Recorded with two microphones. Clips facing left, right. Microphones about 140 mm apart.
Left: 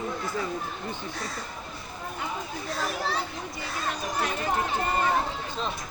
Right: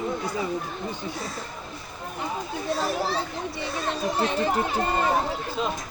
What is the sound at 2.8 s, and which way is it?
A child's voice, 30° right (ahead or behind).